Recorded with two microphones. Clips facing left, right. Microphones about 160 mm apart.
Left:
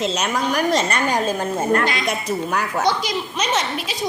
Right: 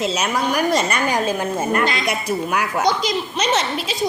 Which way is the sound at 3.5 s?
30° right (ahead or behind).